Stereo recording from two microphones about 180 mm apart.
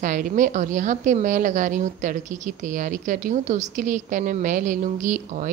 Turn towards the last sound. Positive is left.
turn(degrees=-45)  # may be behind; listen again after turning